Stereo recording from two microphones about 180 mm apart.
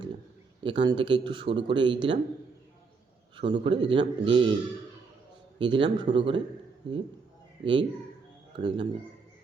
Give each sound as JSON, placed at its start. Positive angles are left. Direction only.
{"t": 0.6, "sound": "speech", "side_deg": -25}
{"t": 3.3, "sound": "speech", "side_deg": -30}
{"t": 5.5, "sound": "speech", "side_deg": -30}